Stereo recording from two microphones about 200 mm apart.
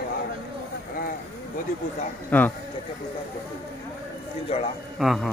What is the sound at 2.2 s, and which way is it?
Speech, 10° left (ahead or behind).